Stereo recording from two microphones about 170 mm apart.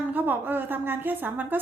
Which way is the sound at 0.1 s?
10° right (ahead or behind).